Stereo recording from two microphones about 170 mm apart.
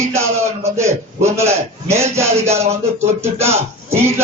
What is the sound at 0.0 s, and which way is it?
A man's voice, 15° right (ahead or behind).